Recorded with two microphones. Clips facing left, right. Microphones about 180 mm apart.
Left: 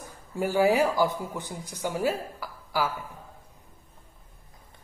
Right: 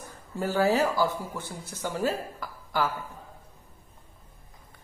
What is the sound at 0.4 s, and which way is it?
Speech, 15° left (ahead or behind).